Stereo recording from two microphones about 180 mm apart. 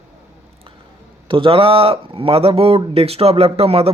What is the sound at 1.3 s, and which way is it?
A man's voice, 30° right (ahead or behind).